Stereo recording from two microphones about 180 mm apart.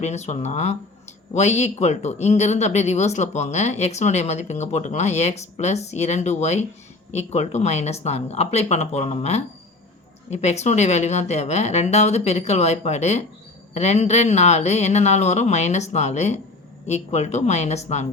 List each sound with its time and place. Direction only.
0.0 s speech: 40° left (ahead or behind)